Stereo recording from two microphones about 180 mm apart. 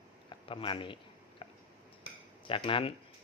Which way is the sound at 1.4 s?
30° left (ahead or behind).